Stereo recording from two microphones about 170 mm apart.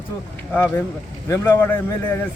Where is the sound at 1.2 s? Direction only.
20° left (ahead or behind).